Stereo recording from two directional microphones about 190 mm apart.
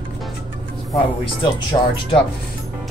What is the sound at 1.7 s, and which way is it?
Speech, 20° left (ahead or behind).